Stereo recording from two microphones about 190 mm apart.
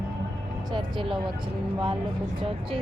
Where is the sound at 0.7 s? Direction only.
25° right (ahead or behind).